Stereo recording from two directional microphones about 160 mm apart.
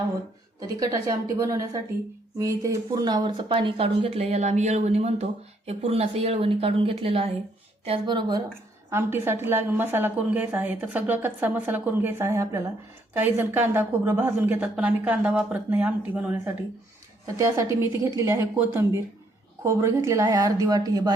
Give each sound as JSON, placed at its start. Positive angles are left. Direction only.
{"t": 0.8, "sound": "speech", "side_deg": -20}
{"t": 8.9, "sound": "a woman's voice", "side_deg": -15}